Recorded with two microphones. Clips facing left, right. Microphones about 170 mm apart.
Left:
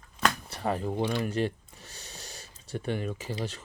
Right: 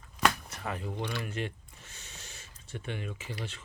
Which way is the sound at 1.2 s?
35° left (ahead or behind).